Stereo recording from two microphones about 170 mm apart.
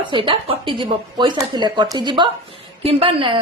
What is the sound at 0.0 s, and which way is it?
A woman's voice, 30° right (ahead or behind).